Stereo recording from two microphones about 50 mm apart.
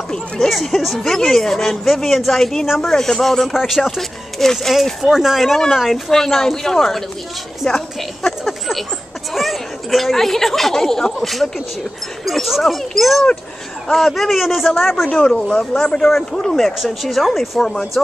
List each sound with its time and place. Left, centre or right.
0.5 s speech: centre
15.0 s speech: centre
17.6 s speech: centre